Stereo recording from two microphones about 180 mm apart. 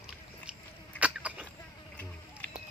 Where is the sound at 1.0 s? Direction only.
10° right (ahead or behind).